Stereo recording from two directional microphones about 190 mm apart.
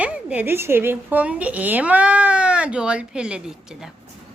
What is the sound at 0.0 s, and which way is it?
Speech, 5° right (ahead or behind).